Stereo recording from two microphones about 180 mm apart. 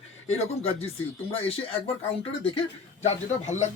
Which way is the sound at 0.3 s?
35° left (ahead or behind).